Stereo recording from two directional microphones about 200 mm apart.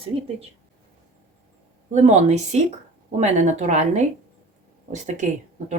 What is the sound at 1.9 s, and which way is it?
Speech, 35° right (ahead or behind).